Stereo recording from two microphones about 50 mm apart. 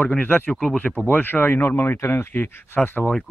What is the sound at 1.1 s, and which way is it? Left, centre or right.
Speech, left.